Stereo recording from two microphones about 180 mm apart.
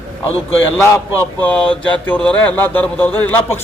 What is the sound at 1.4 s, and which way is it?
Speech, 5° left (ahead or behind).